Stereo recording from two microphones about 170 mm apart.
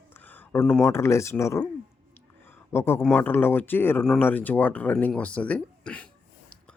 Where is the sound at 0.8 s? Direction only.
15° left (ahead or behind).